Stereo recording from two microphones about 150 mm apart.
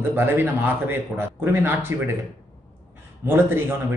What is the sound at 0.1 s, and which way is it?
Speech, 15° right (ahead or behind).